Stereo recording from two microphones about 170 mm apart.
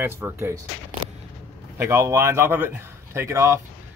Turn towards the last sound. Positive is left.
turn(degrees=-15)  # may be behind; listen again after turning